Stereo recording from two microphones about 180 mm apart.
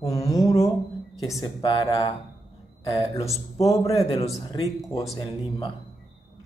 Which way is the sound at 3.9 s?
35° left (ahead or behind).